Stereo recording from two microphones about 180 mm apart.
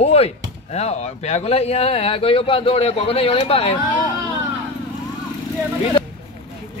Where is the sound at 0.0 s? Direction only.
35° left (ahead or behind).